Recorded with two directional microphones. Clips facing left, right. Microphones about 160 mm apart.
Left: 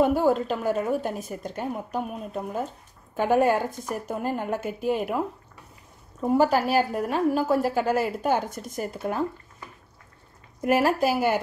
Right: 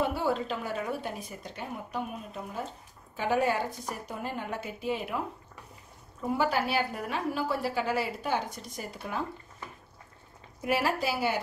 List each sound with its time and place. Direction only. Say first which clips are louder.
0.0 s a woman's voice: left 8 dB; 45° left (ahead or behind)
6.3 s a woman's voice: left 7 dB; 45° left (ahead or behind)
10.6 s a woman's voice: left 7 dB; 50° left (ahead or behind)